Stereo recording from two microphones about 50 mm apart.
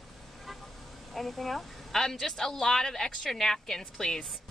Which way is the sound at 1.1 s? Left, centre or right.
Centre.